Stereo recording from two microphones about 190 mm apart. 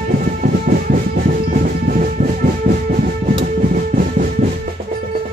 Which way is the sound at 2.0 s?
45° right (ahead or behind).